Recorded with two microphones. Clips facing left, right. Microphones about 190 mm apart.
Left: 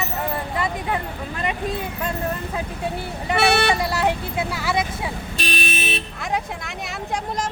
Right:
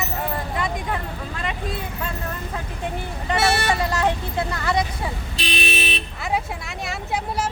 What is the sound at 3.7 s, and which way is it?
Speech, 10° left (ahead or behind).